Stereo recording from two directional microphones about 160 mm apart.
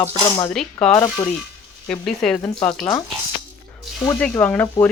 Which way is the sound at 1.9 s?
5° left (ahead or behind).